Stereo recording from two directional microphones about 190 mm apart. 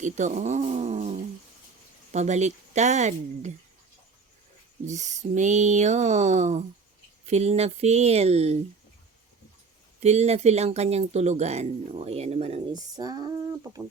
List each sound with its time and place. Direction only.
0.0 s speech: 40° right (ahead or behind)
4.9 s speech: 40° right (ahead or behind)
10.0 s speech: 35° right (ahead or behind)
12.7 s speech: 20° right (ahead or behind)